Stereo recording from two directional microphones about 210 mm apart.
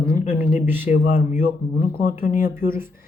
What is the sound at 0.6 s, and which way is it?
Speech, 10° right (ahead or behind).